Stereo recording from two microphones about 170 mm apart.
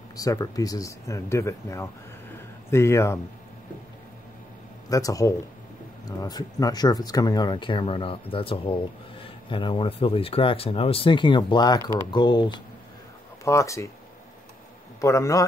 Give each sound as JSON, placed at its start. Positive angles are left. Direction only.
{"t": 0.1, "sound": "speech", "side_deg": 20}
{"t": 2.3, "sound": "a sound", "side_deg": 15}
{"t": 4.8, "sound": "speech", "side_deg": 20}
{"t": 15.0, "sound": "speech", "side_deg": 20}